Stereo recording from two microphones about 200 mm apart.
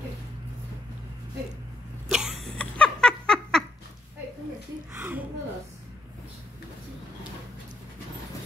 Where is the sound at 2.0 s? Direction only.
5° right (ahead or behind).